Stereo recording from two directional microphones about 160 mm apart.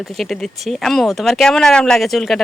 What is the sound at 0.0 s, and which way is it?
Speech, centre (ahead or behind).